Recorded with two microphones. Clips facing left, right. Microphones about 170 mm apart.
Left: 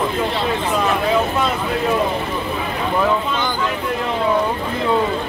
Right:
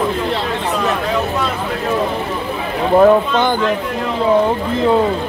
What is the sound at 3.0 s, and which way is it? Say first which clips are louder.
Speech: right 9 dB; 50° right (ahead or behind).